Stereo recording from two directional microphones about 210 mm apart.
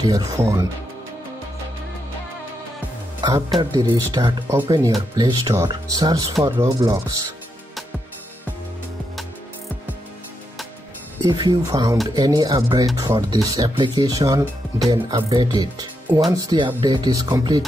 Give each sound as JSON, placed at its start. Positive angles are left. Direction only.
{"t": 0.0, "sound": "speech", "side_deg": -15}
{"t": 3.2, "sound": "speech", "side_deg": -20}
{"t": 11.2, "sound": "speech", "side_deg": -20}